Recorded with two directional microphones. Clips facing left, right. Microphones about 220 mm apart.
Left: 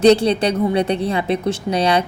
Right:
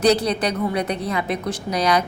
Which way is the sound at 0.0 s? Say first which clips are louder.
Left 5 dB; 30° left (ahead or behind).